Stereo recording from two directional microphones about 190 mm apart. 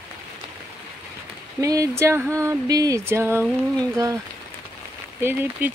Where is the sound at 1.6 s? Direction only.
15° right (ahead or behind).